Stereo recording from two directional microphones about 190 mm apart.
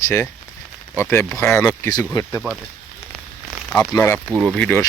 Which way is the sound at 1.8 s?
20° left (ahead or behind).